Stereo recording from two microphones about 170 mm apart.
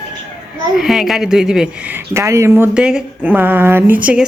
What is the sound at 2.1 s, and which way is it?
Speech, 15° right (ahead or behind).